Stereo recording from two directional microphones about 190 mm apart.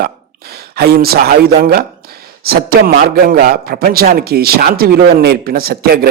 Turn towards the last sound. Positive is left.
turn(degrees=-55)  # may be behind; listen again after turning